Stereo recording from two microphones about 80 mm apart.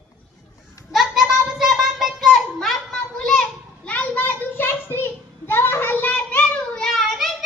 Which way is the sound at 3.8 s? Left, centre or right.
Left.